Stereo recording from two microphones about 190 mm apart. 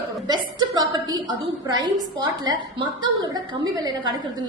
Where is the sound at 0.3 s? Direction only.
20° right (ahead or behind).